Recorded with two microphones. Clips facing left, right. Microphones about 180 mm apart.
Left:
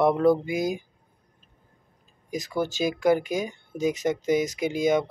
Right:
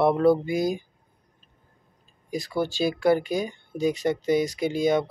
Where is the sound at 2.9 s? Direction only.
15° left (ahead or behind).